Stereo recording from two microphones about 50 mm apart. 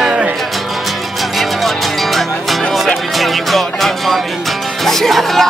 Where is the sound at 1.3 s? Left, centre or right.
Centre.